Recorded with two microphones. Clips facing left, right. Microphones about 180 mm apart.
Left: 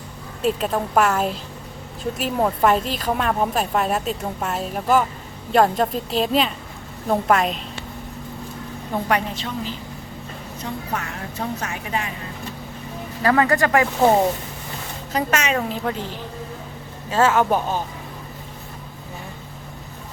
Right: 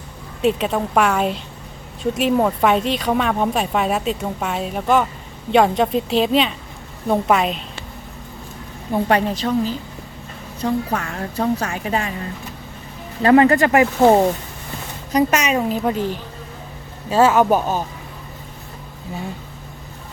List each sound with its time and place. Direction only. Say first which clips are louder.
0.4 s speech: right 3 dB; centre (ahead or behind)
9.0 s a woman's voice: right 5 dB; 35° right (ahead or behind)
13.2 s speech: right 6 dB; 25° right (ahead or behind)
15.1 s speech: right 5 dB; 15° right (ahead or behind)
17.1 s speech: right 4 dB; 15° right (ahead or behind)